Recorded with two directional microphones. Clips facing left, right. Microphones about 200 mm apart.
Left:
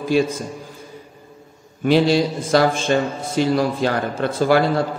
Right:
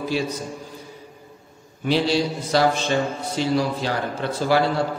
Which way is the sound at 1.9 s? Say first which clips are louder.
Left 5 dB; 50° left (ahead or behind).